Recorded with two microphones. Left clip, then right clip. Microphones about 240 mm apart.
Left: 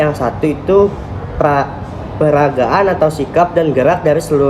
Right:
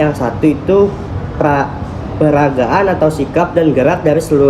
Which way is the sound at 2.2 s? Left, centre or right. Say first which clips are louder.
Even; centre.